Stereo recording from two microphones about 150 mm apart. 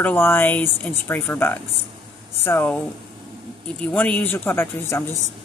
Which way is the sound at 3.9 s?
10° left (ahead or behind).